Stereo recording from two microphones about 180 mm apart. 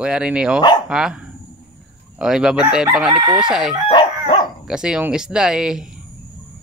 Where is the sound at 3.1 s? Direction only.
20° right (ahead or behind).